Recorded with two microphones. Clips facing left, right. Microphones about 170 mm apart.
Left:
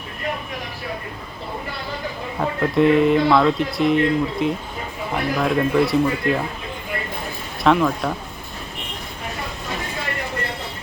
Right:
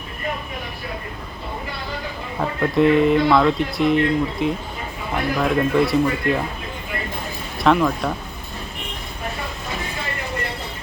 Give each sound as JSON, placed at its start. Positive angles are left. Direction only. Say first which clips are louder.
{"t": 2.4, "sound": "speech", "louder": "even", "side_deg": 0}
{"t": 7.6, "sound": "speech", "louder": "even", "side_deg": 0}